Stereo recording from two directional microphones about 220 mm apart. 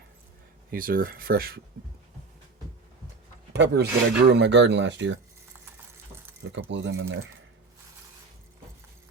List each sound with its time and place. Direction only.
0.7 s speech: 40° right (ahead or behind)
3.5 s speech: 50° right (ahead or behind)
6.4 s speech: 55° right (ahead or behind)